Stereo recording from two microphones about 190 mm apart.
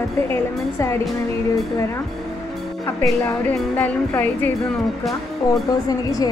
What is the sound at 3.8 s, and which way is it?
Speech, 10° left (ahead or behind).